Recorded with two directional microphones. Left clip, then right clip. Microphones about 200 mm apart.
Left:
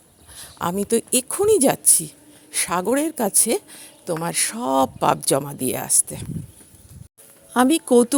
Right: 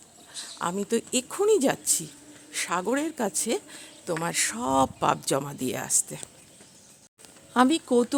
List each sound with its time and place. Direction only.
0.3 s speech: 30° left (ahead or behind)
7.5 s speech: 30° left (ahead or behind)